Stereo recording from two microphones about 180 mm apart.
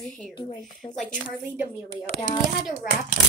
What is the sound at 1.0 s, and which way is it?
Speech, 5° right (ahead or behind).